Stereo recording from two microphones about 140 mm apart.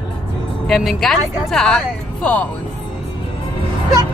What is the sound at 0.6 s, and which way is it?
Speech, centre (ahead or behind).